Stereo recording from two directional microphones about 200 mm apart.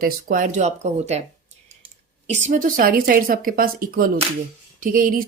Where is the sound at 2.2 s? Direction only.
35° right (ahead or behind).